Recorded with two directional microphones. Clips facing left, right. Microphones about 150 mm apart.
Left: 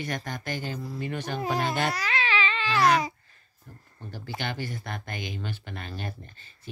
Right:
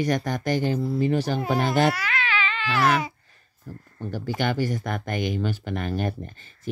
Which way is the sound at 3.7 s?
45° right (ahead or behind).